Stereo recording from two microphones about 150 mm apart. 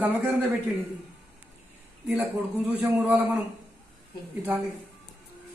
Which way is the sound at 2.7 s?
10° right (ahead or behind).